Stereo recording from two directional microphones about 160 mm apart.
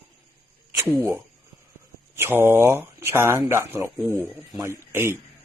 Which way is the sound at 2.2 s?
15° right (ahead or behind).